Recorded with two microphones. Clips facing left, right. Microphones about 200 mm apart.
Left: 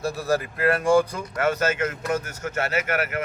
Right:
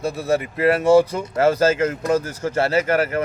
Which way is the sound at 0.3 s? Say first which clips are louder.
Right 5 dB; 25° right (ahead or behind).